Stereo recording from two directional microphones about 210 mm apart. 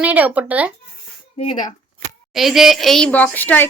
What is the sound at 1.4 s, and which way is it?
Speech, 25° left (ahead or behind).